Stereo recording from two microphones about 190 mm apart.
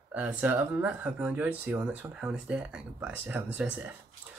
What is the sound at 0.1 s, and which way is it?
Speech, 5° right (ahead or behind).